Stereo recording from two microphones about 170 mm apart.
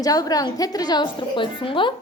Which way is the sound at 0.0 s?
20° left (ahead or behind).